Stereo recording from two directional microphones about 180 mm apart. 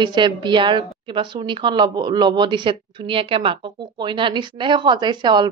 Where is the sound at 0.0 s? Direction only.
25° right (ahead or behind).